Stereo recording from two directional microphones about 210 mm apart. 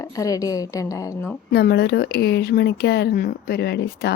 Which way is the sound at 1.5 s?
50° left (ahead or behind).